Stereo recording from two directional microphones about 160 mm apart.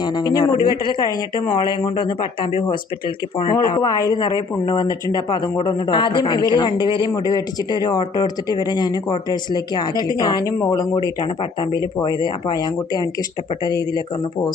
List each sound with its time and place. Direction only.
0.0 s speech: 25° left (ahead or behind)
3.5 s speech: 20° left (ahead or behind)